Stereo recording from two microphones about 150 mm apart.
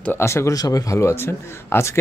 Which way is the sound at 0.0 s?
15° left (ahead or behind).